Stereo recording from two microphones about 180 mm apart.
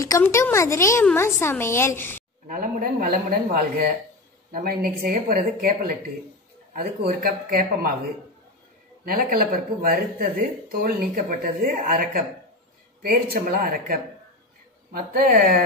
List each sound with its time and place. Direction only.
0.0 s speech: 15° left (ahead or behind)
2.4 s speech: 50° right (ahead or behind)
9.0 s speech: 55° right (ahead or behind)